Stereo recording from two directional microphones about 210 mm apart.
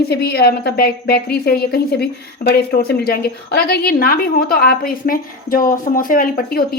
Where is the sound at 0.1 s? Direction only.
50° left (ahead or behind).